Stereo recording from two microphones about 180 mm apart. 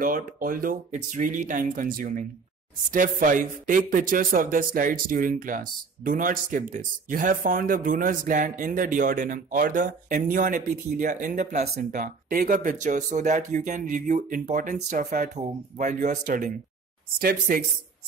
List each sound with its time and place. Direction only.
0.0 s speech: 50° right (ahead or behind)
17.2 s speech: 55° right (ahead or behind)